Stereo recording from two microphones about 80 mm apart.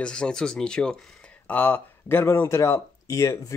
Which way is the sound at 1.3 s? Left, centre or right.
Left.